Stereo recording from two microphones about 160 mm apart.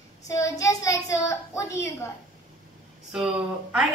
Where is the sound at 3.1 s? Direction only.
5° right (ahead or behind).